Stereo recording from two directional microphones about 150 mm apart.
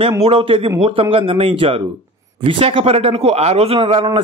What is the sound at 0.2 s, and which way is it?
A man's voice, 35° right (ahead or behind).